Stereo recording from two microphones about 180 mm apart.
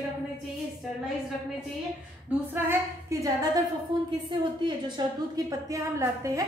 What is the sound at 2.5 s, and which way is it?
A woman's voice, 15° right (ahead or behind).